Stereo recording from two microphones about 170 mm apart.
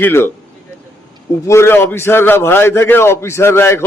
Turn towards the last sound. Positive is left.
turn(degrees=15)  # may be behind; listen again after turning